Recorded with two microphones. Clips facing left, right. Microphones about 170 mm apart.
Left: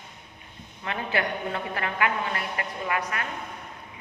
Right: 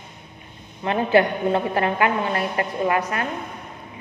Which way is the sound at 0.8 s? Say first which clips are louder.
Right 11 dB; 30° right (ahead or behind).